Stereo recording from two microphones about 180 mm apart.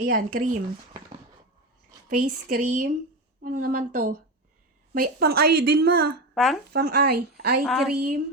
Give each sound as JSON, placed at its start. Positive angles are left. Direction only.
{"t": 0.0, "sound": "speech", "side_deg": -50}
{"t": 2.0, "sound": "speech", "side_deg": -50}
{"t": 4.9, "sound": "a woman's voice", "side_deg": -60}
{"t": 6.3, "sound": "speech", "side_deg": 0}
{"t": 6.7, "sound": "a woman's voice", "side_deg": -60}
{"t": 7.6, "sound": "a woman's voice", "side_deg": 0}